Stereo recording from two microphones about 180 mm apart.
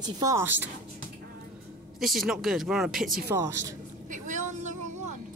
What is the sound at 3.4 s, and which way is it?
Speech, 15° right (ahead or behind).